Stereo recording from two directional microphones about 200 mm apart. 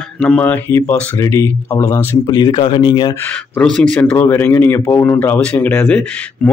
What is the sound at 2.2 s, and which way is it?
Speech, 20° left (ahead or behind).